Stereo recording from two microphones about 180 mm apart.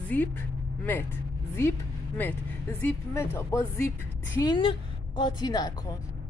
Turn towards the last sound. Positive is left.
turn(degrees=25)  # may be behind; listen again after turning